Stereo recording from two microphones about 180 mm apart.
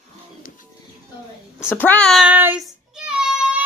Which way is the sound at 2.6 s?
5° right (ahead or behind).